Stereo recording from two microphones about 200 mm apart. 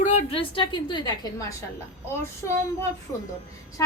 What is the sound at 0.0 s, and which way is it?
A woman's voice, 30° left (ahead or behind).